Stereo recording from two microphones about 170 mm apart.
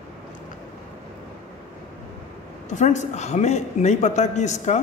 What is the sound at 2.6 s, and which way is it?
Speech, 45° left (ahead or behind).